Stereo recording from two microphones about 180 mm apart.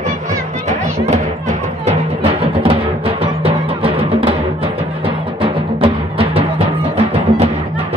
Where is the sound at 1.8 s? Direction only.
35° right (ahead or behind).